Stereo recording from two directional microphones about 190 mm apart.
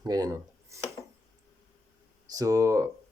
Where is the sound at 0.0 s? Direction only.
20° right (ahead or behind).